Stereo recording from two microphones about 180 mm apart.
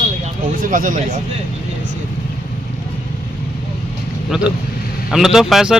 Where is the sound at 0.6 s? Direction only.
50° right (ahead or behind).